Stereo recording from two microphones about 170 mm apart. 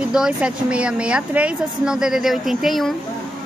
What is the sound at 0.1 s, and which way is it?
A woman's voice, 5° right (ahead or behind).